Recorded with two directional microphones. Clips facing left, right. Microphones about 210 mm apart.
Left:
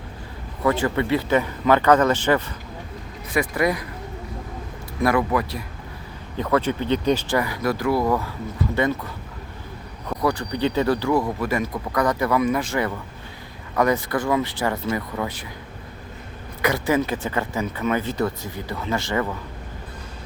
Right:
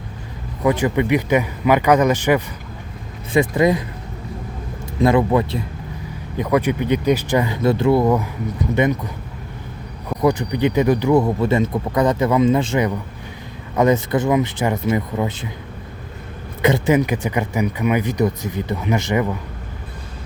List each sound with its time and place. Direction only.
0.6 s speech: 15° right (ahead or behind)
4.9 s speech: 25° right (ahead or behind)
6.3 s speech: 15° right (ahead or behind)
10.2 s speech: 20° right (ahead or behind)
16.6 s speech: 25° right (ahead or behind)